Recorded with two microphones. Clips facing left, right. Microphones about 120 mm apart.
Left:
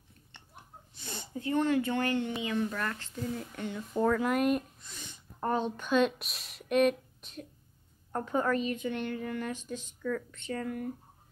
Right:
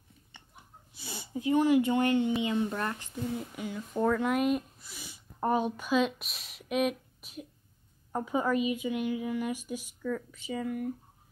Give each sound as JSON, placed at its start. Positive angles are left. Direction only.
{"t": 0.9, "sound": "speech", "side_deg": -5}
{"t": 3.3, "sound": "a woman's voice", "side_deg": -5}